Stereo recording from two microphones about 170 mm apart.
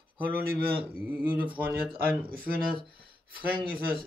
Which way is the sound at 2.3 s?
60° right (ahead or behind).